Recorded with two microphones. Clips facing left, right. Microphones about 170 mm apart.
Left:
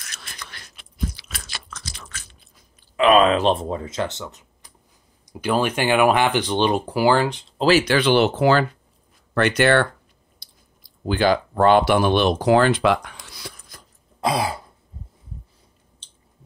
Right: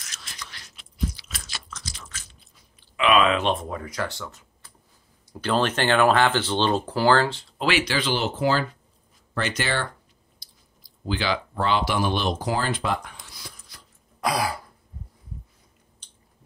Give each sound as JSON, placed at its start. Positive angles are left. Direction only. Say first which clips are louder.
{"t": 0.0, "sound": "biting", "louder": "left 2 dB", "side_deg": 55}
{"t": 3.0, "sound": "speech", "louder": "left 5 dB", "side_deg": 40}
{"t": 7.5, "sound": "speech", "louder": "left 8 dB", "side_deg": 35}
{"t": 7.8, "sound": "speech", "louder": "left 8 dB", "side_deg": 60}
{"t": 14.2, "sound": "throat clearing", "louder": "left 3 dB", "side_deg": 25}